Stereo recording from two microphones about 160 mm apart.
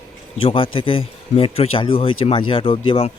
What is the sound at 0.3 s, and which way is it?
Speech, 35° left (ahead or behind).